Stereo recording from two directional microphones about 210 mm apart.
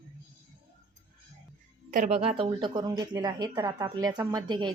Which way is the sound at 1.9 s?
40° right (ahead or behind).